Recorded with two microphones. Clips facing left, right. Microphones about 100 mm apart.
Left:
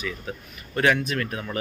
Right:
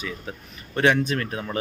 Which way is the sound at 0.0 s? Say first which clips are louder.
Left 1 dB; 30° right (ahead or behind).